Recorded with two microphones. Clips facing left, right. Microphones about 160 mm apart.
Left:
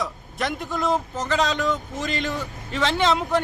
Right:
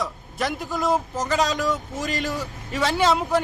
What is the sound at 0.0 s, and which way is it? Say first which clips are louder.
A man's voice: right 1 dB; centre (ahead or behind).